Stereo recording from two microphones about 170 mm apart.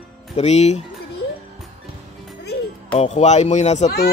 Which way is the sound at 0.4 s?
40° left (ahead or behind).